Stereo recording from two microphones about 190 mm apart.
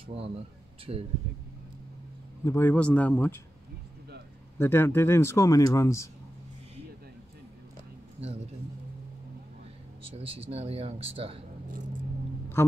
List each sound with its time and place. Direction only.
0.0 s speech: 30° right (ahead or behind)
2.4 s speech: 15° left (ahead or behind)
4.6 s speech: 10° left (ahead or behind)
8.2 s speech: 35° right (ahead or behind)
10.1 s speech: 30° right (ahead or behind)